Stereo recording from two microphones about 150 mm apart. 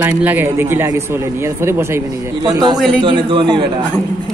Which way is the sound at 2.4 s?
30° right (ahead or behind).